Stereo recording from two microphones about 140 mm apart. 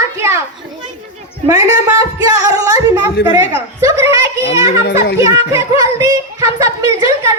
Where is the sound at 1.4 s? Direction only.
25° right (ahead or behind).